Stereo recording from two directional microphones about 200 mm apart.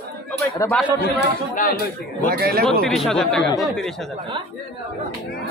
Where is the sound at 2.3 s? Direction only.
50° right (ahead or behind).